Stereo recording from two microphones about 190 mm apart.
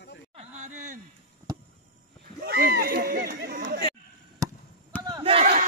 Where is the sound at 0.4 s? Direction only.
40° right (ahead or behind).